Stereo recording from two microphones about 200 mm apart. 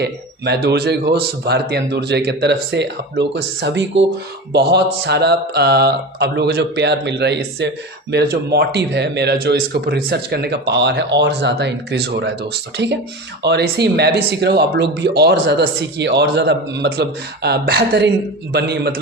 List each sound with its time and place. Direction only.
0.0 s speech: 55° right (ahead or behind)